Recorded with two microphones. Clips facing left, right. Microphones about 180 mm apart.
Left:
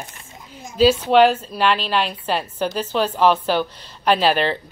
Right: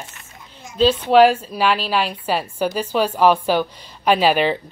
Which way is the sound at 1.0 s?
5° right (ahead or behind).